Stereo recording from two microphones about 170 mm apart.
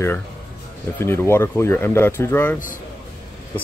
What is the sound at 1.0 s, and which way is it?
Speech, 15° left (ahead or behind).